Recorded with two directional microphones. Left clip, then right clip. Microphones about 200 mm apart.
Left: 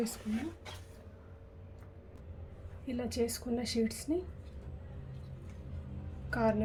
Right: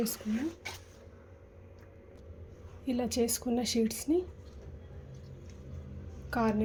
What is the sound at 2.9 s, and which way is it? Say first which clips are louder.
A woman's voice: right 4 dB; 35° right (ahead or behind).